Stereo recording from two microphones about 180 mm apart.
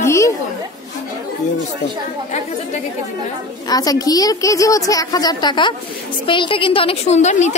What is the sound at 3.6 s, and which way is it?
A woman's voice, 20° left (ahead or behind).